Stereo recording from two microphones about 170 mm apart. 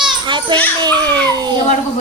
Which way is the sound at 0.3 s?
30° right (ahead or behind).